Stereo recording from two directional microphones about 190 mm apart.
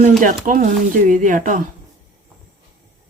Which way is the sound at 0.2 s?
45° right (ahead or behind).